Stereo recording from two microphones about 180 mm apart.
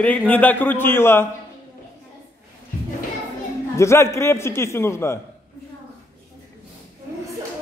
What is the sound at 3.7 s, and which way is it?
A man's voice, 15° left (ahead or behind).